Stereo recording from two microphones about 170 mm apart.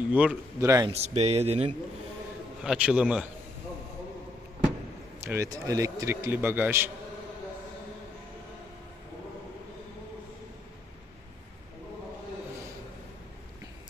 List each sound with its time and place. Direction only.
0.1 s a man's voice: 10° right (ahead or behind)
0.8 s speech: 40° right (ahead or behind)
2.6 s a man's voice: 5° right (ahead or behind)
5.2 s a man's voice: 15° right (ahead or behind)